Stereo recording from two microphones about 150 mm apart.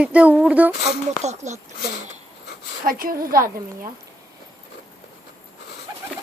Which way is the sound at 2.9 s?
70° right (ahead or behind).